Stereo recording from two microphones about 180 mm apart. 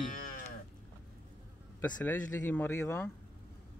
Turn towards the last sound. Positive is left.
turn(degrees=15)  # may be behind; listen again after turning